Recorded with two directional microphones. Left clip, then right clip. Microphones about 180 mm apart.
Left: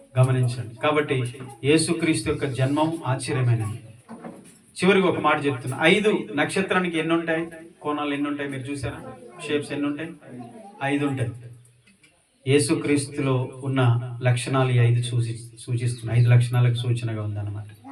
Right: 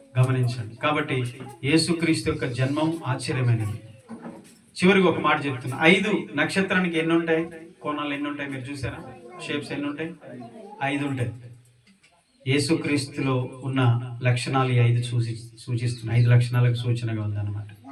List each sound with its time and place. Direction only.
0.1 s a man's voice: 15° right (ahead or behind)
4.7 s a man's voice: 15° right (ahead or behind)
12.5 s a man's voice: 15° right (ahead or behind)